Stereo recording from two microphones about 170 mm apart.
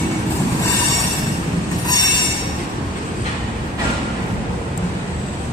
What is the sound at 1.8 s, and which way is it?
Train, 25° left (ahead or behind).